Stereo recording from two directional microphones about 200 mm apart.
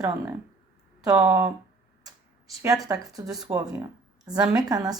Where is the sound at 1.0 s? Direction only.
15° right (ahead or behind).